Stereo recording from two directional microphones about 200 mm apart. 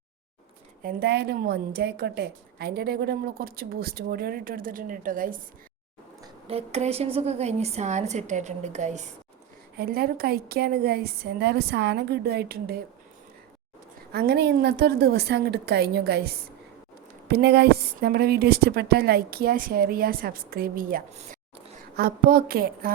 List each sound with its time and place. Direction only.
0.8 s a woman's voice: 50° right (ahead or behind)
6.2 s a woman's voice: 30° right (ahead or behind)
9.7 s a woman's voice: 50° right (ahead or behind)
14.1 s a woman's voice: 55° right (ahead or behind)